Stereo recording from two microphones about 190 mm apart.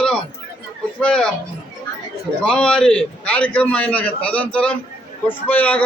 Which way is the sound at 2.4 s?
5° left (ahead or behind).